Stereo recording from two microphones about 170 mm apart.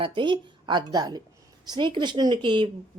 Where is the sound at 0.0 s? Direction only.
30° right (ahead or behind).